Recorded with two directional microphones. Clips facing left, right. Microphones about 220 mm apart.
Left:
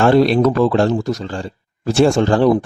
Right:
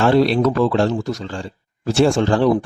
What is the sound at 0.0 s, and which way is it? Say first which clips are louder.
A man's voice: left 3 dB; 50° left (ahead or behind).